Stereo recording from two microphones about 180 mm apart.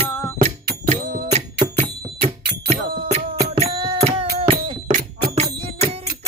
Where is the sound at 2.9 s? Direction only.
45° right (ahead or behind).